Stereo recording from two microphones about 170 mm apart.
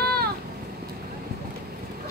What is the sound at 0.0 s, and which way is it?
Vehicle, 65° right (ahead or behind).